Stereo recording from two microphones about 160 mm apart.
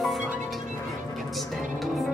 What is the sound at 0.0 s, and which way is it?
Music, centre (ahead or behind).